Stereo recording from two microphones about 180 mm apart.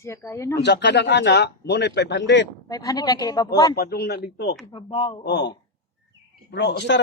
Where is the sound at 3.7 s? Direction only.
60° left (ahead or behind).